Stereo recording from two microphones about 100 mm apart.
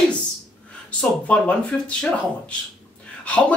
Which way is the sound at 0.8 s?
15° left (ahead or behind).